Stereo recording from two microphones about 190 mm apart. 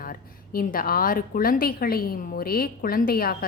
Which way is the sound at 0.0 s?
50° left (ahead or behind).